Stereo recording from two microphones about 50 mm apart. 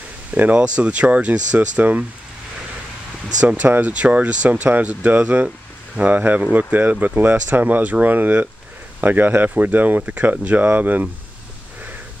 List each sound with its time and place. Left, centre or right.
0.3 s speech: right
3.6 s speech: right
3.9 s speech: right